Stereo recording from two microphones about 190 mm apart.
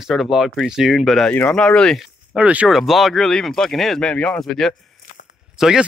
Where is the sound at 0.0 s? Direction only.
Centre (ahead or behind).